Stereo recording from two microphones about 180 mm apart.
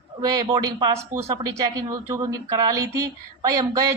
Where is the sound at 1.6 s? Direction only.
20° right (ahead or behind).